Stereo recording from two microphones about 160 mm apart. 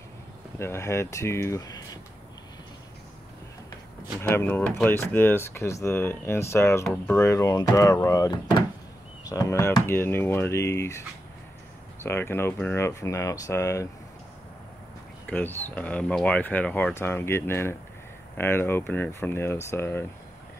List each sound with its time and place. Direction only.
0.6 s speech: 15° left (ahead or behind)
4.2 s speech: 15° left (ahead or behind)
12.0 s speech: 15° left (ahead or behind)
15.2 s speech: 10° left (ahead or behind)